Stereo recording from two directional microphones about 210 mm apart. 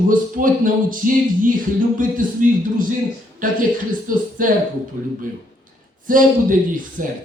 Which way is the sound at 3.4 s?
40° right (ahead or behind).